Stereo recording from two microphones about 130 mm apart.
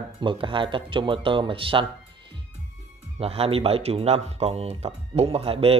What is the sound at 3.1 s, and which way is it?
Speech, 50° right (ahead or behind).